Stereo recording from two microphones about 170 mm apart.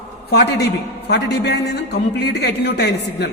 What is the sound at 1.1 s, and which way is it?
A man's voice, 75° left (ahead or behind).